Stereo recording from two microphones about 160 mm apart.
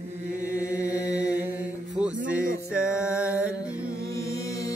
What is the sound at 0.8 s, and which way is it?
Mantra, 20° left (ahead or behind).